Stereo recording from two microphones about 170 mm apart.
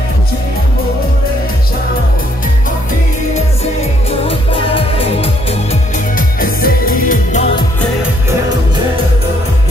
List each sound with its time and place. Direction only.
4.3 s music: 35° left (ahead or behind)
6.1 s music: 60° left (ahead or behind)